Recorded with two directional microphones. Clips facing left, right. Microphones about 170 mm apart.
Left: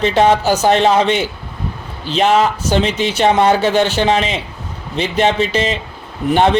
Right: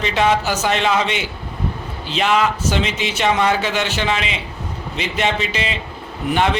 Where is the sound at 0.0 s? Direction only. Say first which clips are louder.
Left 5 dB; 35° left (ahead or behind).